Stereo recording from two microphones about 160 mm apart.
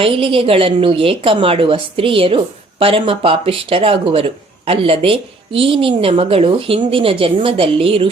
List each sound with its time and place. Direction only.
0.0 s speech: 35° right (ahead or behind)